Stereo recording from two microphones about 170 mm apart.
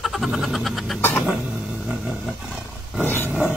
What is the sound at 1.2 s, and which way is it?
Roaring cats, 5° right (ahead or behind).